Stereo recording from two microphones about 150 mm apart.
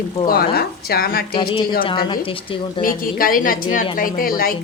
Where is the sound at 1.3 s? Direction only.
35° left (ahead or behind).